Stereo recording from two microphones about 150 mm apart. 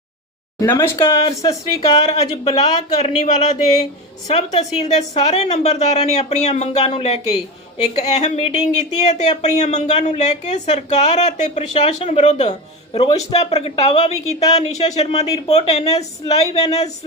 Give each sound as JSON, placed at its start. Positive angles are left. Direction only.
{"t": 0.6, "sound": "speech", "side_deg": 15}
{"t": 0.9, "sound": "speech", "side_deg": 40}
{"t": 1.5, "sound": "speech", "side_deg": 25}
{"t": 2.0, "sound": "speech", "side_deg": 40}